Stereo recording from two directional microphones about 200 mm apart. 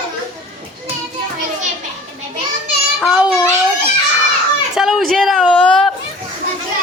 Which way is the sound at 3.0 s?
Centre (ahead or behind).